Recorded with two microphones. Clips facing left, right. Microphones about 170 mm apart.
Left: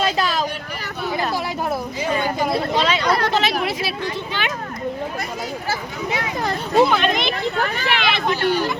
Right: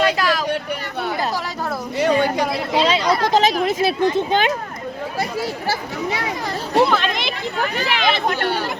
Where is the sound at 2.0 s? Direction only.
70° right (ahead or behind).